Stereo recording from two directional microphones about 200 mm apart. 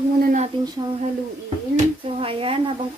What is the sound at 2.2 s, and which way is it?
Speech, 25° right (ahead or behind).